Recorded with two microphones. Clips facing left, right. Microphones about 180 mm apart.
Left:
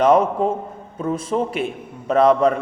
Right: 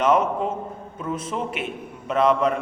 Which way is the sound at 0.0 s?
35° left (ahead or behind).